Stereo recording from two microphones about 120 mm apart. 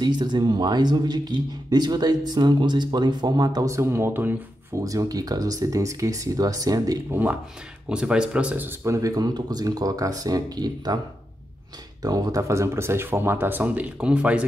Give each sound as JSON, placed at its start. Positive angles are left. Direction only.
{"t": 0.0, "sound": "speech", "side_deg": -35}
{"t": 4.8, "sound": "speech", "side_deg": -30}
{"t": 7.1, "sound": "speech", "side_deg": -15}
{"t": 12.0, "sound": "speech", "side_deg": -30}